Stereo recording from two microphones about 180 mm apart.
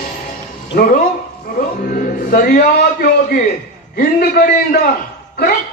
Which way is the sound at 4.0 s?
60° left (ahead or behind).